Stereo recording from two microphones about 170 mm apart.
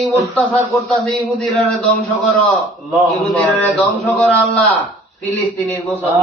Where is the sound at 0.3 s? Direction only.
Centre (ahead or behind).